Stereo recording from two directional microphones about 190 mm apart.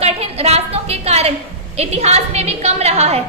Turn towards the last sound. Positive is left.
turn(degrees=-35)  # may be behind; listen again after turning